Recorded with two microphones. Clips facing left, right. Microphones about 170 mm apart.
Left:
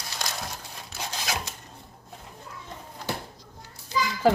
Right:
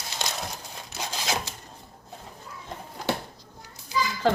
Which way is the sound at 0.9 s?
25° right (ahead or behind).